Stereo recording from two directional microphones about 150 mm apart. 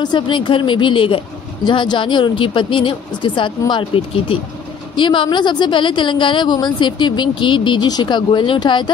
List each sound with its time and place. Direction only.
0.0 s a woman's voice: 30° left (ahead or behind)